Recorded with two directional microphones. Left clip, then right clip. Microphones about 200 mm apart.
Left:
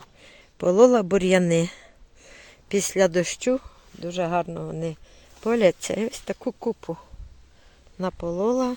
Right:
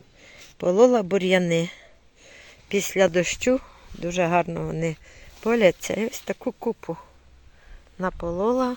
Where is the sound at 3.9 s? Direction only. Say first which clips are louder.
Right 3 dB; 15° right (ahead or behind); by 8.7 s 5° left (ahead or behind).